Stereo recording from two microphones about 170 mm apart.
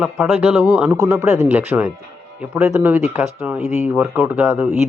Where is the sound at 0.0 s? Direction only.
10° right (ahead or behind).